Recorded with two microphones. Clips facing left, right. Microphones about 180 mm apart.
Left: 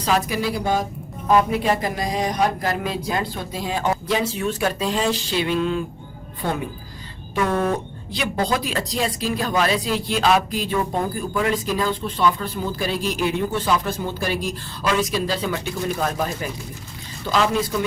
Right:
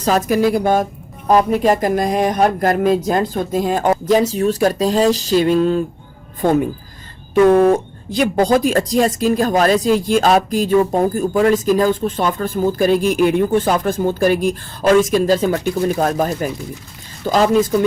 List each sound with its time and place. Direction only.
0.0 s speech: 45° right (ahead or behind)
1.3 s speech: 40° right (ahead or behind)
7.4 s speech: 45° right (ahead or behind)